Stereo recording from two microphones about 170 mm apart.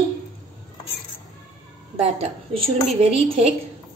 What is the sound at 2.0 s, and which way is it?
A woman's voice, 35° right (ahead or behind).